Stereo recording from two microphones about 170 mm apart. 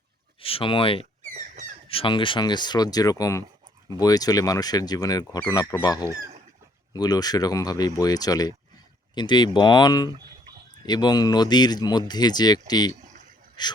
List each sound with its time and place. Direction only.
0.4 s speech: 30° left (ahead or behind)
1.2 s a sound: 45° right (ahead or behind)
1.9 s speech: 30° left (ahead or behind)